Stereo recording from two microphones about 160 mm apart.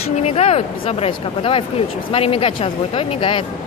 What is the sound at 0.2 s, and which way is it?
Speech, 40° left (ahead or behind).